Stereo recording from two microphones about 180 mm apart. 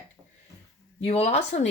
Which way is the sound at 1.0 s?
35° left (ahead or behind).